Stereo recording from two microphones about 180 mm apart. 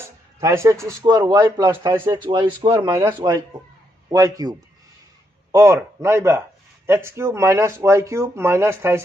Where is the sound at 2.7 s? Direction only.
15° right (ahead or behind).